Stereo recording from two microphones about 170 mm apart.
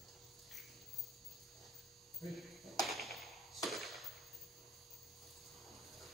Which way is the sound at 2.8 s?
Centre (ahead or behind).